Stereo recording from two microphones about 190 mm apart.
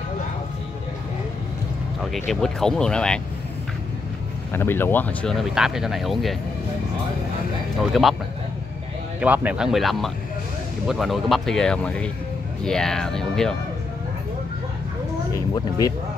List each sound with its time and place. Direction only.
2.1 s speech: centre (ahead or behind)
4.5 s speech: 10° left (ahead or behind)
7.9 s speech: centre (ahead or behind)
9.2 s speech: 10° right (ahead or behind)
15.3 s speech: 20° left (ahead or behind)